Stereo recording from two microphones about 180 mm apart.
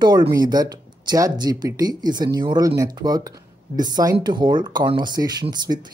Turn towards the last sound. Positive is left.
turn(degrees=-25)  # may be behind; listen again after turning